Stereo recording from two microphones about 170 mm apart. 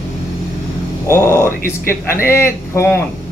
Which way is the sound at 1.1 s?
15° left (ahead or behind).